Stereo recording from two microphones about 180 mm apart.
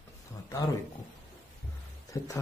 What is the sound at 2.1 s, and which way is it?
Speech, 15° left (ahead or behind).